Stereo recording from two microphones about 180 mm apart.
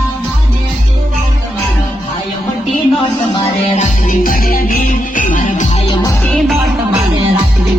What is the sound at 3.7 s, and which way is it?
Music, 50° left (ahead or behind).